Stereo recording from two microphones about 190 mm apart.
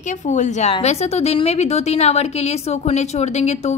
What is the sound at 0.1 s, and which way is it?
A woman's voice, 40° left (ahead or behind).